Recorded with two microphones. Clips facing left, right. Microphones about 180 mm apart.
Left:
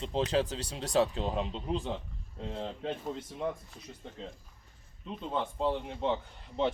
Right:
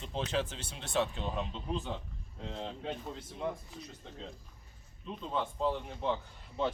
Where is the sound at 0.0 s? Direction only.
30° left (ahead or behind).